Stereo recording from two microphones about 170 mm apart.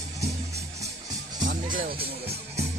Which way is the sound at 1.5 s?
55° right (ahead or behind).